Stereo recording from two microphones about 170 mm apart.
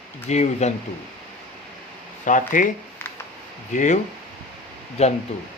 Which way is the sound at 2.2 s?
50° left (ahead or behind).